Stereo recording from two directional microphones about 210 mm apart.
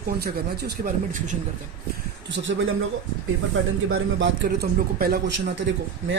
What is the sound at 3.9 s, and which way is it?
A man's voice, 55° right (ahead or behind).